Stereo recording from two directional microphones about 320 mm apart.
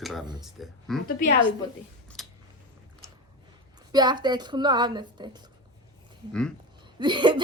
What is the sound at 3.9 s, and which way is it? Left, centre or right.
A woman's voice, centre.